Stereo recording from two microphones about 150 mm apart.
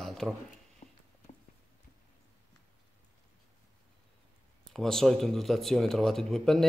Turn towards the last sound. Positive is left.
turn(degrees=0)  # may be behind; listen again after turning